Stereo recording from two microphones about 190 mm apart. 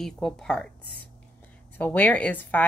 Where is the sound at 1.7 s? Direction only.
10° left (ahead or behind).